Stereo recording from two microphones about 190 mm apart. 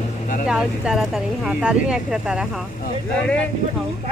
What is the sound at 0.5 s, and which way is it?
Speech, 5° right (ahead or behind).